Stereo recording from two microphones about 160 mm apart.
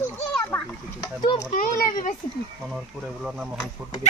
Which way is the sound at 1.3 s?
55° left (ahead or behind).